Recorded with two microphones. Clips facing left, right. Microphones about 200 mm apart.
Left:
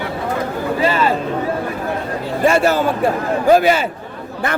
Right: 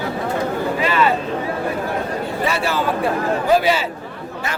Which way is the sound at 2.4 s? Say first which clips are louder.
Left 8 dB; 45° left (ahead or behind).